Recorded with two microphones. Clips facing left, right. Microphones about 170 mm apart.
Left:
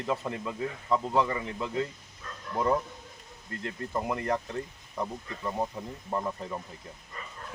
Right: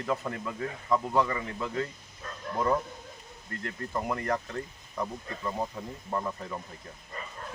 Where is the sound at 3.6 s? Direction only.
20° left (ahead or behind).